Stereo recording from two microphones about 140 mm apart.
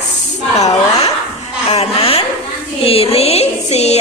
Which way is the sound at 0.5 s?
50° left (ahead or behind).